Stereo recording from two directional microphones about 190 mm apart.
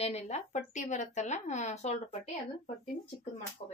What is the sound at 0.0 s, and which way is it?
Speech, 35° left (ahead or behind).